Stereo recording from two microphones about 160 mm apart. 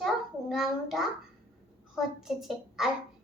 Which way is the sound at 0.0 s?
Centre (ahead or behind).